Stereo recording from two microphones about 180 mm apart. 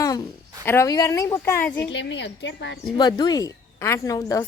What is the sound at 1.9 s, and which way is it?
Speech, 75° left (ahead or behind).